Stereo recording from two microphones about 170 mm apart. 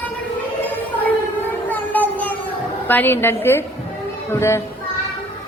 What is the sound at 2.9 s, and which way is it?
Speech, 10° left (ahead or behind).